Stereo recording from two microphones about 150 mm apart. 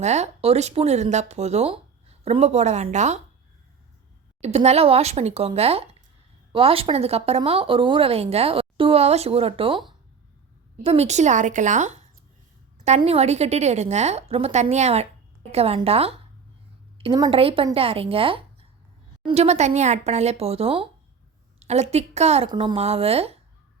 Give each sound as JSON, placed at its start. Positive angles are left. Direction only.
{"t": 0.0, "sound": "speech", "side_deg": -50}
{"t": 4.4, "sound": "a woman's voice", "side_deg": -45}
{"t": 10.8, "sound": "a woman's voice", "side_deg": -45}
{"t": 17.0, "sound": "a woman's voice", "side_deg": -30}
{"t": 22.4, "sound": "a woman's voice", "side_deg": -35}